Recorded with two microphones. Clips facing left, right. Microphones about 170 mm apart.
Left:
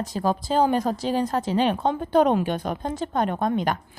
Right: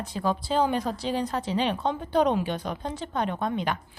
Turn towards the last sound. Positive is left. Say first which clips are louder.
# left 4 dB
turn(degrees=45)  # may be behind; listen again after turning